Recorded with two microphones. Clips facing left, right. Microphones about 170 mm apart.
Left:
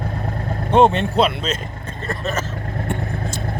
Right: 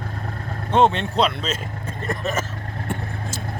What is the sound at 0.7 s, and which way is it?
Speech, 10° left (ahead or behind).